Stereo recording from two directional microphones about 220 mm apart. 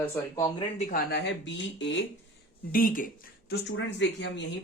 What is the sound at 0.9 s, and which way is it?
Speech, 50° left (ahead or behind).